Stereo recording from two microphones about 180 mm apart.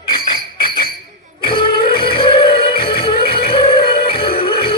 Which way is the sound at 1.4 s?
30° left (ahead or behind).